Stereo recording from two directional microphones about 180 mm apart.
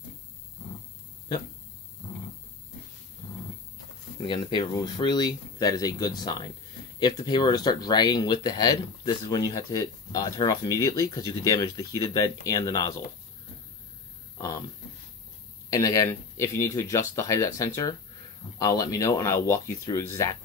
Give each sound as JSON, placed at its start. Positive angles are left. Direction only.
{"t": 4.3, "sound": "speech", "side_deg": 25}
{"t": 15.7, "sound": "speech", "side_deg": 20}